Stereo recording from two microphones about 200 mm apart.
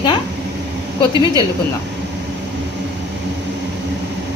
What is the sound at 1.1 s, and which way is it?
Speech, 20° right (ahead or behind).